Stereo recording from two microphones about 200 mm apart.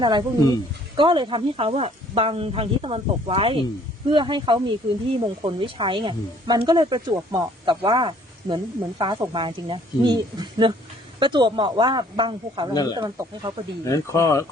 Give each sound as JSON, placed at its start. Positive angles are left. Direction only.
{"t": 0.0, "sound": "speech", "side_deg": -25}
{"t": 12.7, "sound": "speech", "side_deg": 20}
{"t": 13.0, "sound": "speech", "side_deg": -20}
{"t": 13.8, "sound": "speech", "side_deg": 15}